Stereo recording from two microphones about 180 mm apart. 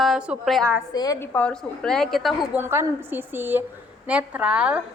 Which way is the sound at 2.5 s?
10° right (ahead or behind).